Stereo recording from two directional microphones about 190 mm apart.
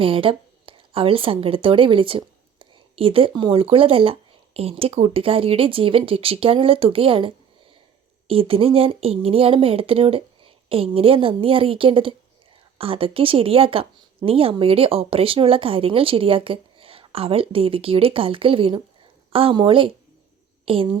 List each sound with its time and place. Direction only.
0.0 s a woman's voice: 30° right (ahead or behind)